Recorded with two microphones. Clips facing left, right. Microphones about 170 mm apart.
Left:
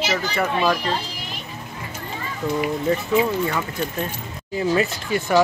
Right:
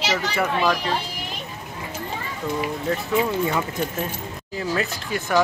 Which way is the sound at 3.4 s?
10° right (ahead or behind).